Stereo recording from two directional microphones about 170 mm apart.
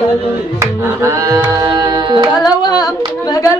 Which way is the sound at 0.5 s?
15° right (ahead or behind).